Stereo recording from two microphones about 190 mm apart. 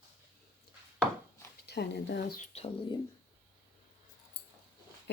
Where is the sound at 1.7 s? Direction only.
65° left (ahead or behind).